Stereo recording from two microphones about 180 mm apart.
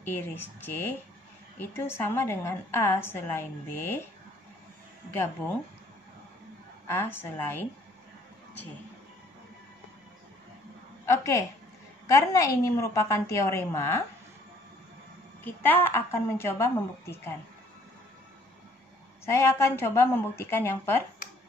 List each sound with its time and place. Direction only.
0.0 s a woman's voice: 10° left (ahead or behind)
6.9 s a woman's voice: 10° left (ahead or behind)
11.1 s a sound: 15° left (ahead or behind)
12.1 s a woman's voice: 15° left (ahead or behind)
15.4 s a woman's voice: 10° left (ahead or behind)
19.2 s a woman's voice: 15° left (ahead or behind)